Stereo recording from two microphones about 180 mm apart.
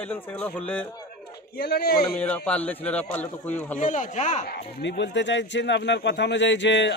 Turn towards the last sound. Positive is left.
turn(degrees=80)